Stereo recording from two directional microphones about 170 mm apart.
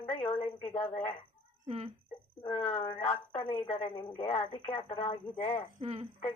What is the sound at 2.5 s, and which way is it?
A woman's voice, 40° left (ahead or behind).